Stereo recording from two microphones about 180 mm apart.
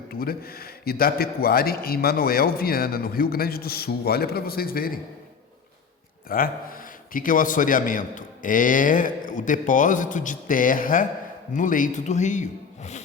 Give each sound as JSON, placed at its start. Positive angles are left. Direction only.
{"t": 0.1, "sound": "a man's voice", "side_deg": 55}
{"t": 6.2, "sound": "a man's voice", "side_deg": 55}